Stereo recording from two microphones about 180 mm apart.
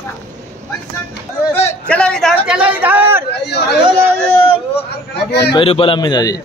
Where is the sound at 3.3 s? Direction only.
65° left (ahead or behind).